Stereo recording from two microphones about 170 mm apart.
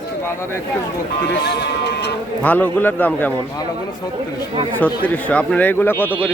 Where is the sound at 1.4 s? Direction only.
75° left (ahead or behind).